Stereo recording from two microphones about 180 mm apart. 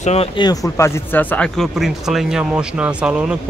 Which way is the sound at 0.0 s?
35° left (ahead or behind).